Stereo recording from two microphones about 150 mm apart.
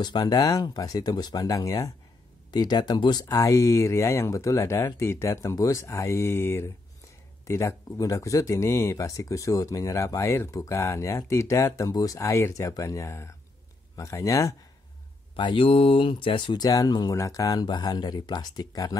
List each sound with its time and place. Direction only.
0.0 s speech: 30° left (ahead or behind)
15.3 s speech: 35° left (ahead or behind)